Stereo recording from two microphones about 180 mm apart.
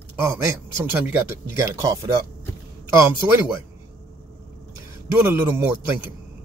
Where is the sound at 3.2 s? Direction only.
15° right (ahead or behind).